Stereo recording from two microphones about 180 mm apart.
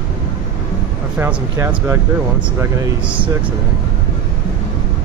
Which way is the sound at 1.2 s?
10° right (ahead or behind).